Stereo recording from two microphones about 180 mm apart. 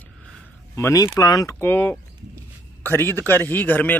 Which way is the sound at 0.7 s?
20° left (ahead or behind).